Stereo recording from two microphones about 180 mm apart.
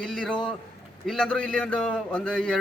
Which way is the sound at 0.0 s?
5° left (ahead or behind).